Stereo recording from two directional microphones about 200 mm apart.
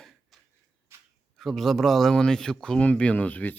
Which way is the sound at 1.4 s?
Centre (ahead or behind).